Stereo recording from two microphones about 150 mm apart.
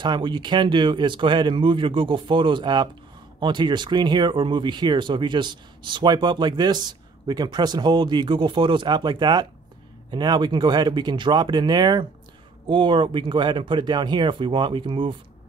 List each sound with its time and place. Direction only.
0.0 s speech: 30° right (ahead or behind)